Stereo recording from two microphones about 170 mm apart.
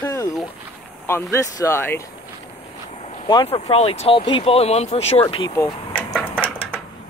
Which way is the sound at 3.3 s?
30° left (ahead or behind).